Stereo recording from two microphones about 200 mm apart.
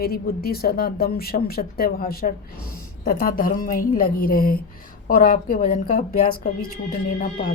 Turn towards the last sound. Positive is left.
turn(degrees=35)  # may be behind; listen again after turning